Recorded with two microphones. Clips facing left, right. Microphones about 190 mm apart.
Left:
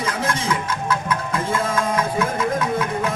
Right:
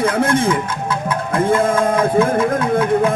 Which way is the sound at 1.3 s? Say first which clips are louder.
Right 10 dB; 55° right (ahead or behind).